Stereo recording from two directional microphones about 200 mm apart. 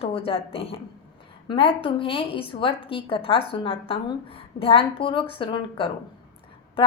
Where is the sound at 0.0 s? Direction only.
30° left (ahead or behind).